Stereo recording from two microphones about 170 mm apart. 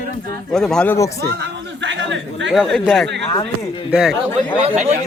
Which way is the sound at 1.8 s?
90° right.